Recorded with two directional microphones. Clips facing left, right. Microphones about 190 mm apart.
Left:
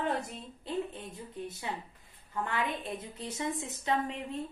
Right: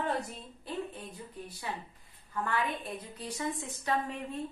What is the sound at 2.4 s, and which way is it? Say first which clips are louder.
A woman's voice: right 1 dB; 20° left (ahead or behind).